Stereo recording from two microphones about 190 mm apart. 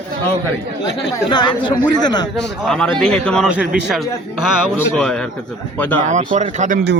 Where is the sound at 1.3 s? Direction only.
25° left (ahead or behind).